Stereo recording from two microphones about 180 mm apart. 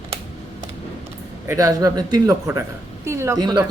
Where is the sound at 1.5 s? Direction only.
20° right (ahead or behind).